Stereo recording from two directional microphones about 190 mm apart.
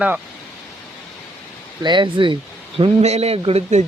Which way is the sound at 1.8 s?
25° right (ahead or behind).